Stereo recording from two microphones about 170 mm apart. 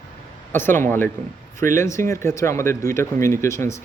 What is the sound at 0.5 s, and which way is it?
Speech, 15° left (ahead or behind).